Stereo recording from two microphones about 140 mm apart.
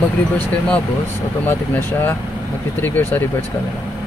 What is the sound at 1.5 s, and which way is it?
Speech, 15° left (ahead or behind).